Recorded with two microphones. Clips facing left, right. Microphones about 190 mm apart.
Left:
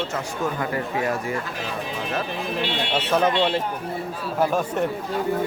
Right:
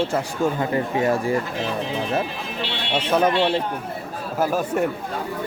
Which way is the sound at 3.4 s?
10° right (ahead or behind).